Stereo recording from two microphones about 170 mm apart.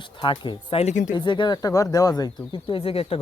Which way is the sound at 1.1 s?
25° left (ahead or behind).